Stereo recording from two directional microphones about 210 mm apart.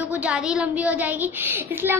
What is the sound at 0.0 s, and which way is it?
A child's voice, 5° right (ahead or behind).